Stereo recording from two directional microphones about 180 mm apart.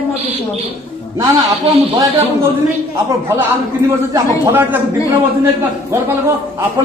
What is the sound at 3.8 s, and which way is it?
Speech, 15° right (ahead or behind).